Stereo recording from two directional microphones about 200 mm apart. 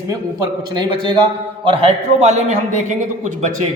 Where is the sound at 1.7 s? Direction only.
30° right (ahead or behind).